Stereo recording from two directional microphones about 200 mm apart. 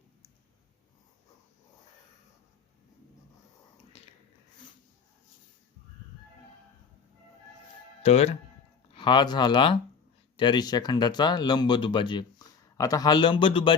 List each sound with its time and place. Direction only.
8.0 s speech: 30° left (ahead or behind)